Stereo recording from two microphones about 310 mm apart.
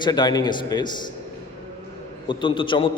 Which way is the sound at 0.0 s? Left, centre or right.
Centre.